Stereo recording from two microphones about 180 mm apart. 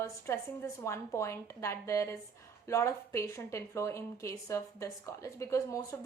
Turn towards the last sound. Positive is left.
turn(degrees=15)  # may be behind; listen again after turning